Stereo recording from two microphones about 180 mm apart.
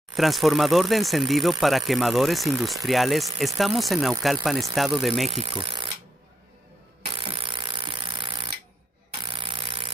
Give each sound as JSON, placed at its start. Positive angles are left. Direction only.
{"t": 0.1, "sound": "speech", "side_deg": 0}
{"t": 5.3, "sound": "wood", "side_deg": -30}
{"t": 7.2, "sound": "tools", "side_deg": -30}
{"t": 9.2, "sound": "jackhammer", "side_deg": -30}